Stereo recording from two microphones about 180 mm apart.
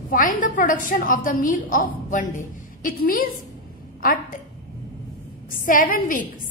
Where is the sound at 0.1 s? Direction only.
45° left (ahead or behind).